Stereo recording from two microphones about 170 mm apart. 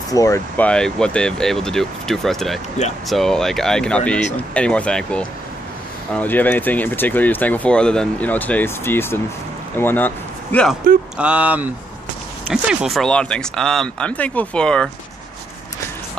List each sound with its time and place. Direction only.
0.1 s speech: 20° left (ahead or behind)
0.6 s speech: 5° left (ahead or behind)
11.1 s speech: 5° right (ahead or behind)